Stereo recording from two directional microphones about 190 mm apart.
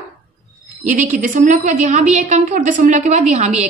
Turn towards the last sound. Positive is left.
turn(degrees=-35)  # may be behind; listen again after turning